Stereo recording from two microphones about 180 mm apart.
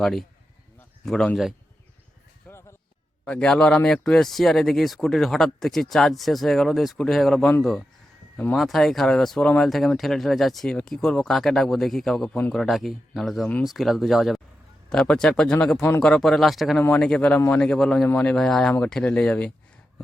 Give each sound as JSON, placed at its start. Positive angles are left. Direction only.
{"t": 0.0, "sound": "speech", "side_deg": 0}
{"t": 2.5, "sound": "basketball bounce", "side_deg": 15}
{"t": 3.2, "sound": "speech", "side_deg": 5}
{"t": 15.8, "sound": "speech", "side_deg": 15}
{"t": 16.0, "sound": "speech", "side_deg": 5}